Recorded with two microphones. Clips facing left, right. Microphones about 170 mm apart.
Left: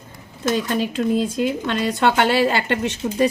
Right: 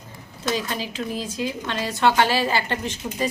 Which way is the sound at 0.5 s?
55° left (ahead or behind).